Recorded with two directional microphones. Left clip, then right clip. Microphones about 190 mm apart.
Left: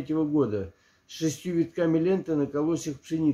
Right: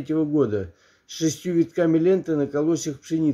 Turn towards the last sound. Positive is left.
turn(degrees=-25)  # may be behind; listen again after turning